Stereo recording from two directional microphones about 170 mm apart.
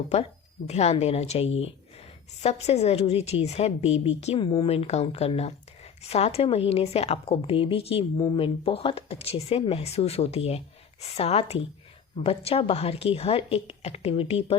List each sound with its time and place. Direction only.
0.7 s a woman's voice: 40° left (ahead or behind)